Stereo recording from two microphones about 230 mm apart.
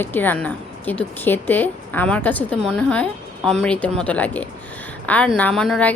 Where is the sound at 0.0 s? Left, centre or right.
Centre.